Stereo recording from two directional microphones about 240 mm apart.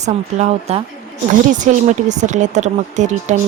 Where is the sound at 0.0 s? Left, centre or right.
Right.